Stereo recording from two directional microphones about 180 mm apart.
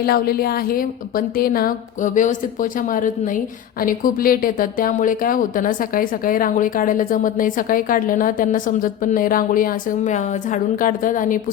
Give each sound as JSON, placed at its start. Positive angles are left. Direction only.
{"t": 0.0, "sound": "speech", "side_deg": 60}